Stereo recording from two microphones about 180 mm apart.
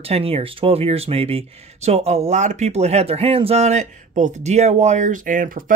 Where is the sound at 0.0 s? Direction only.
35° right (ahead or behind).